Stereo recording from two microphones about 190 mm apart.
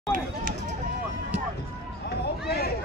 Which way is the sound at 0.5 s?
40° right (ahead or behind).